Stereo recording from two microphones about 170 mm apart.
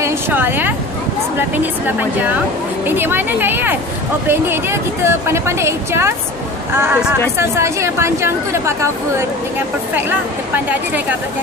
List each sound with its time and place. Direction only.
0.0 s speech: 10° right (ahead or behind)
2.9 s a woman's voice: 10° right (ahead or behind)
9.9 s a woman's voice: 10° right (ahead or behind)